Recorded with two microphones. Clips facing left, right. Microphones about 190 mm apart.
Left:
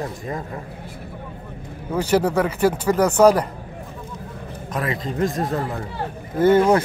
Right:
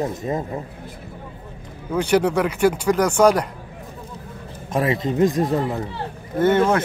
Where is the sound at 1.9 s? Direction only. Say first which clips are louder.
Right 1 dB; 5° left (ahead or behind).